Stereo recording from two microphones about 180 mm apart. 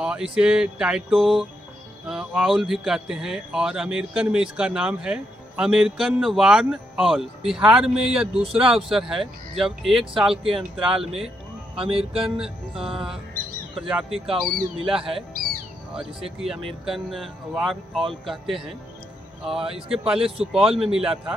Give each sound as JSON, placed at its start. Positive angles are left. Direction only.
{"t": 0.0, "sound": "speech", "side_deg": -5}
{"t": 8.4, "sound": "speech", "side_deg": -30}
{"t": 8.6, "sound": "speech", "side_deg": 0}
{"t": 11.7, "sound": "speech", "side_deg": -30}
{"t": 12.2, "sound": "speech", "side_deg": -5}
{"t": 20.1, "sound": "speech", "side_deg": -5}